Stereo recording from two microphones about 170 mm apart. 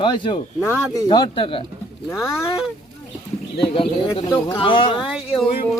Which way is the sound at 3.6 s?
30° left (ahead or behind).